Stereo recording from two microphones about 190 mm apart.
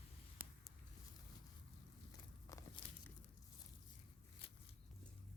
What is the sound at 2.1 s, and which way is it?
Walk, 20° left (ahead or behind).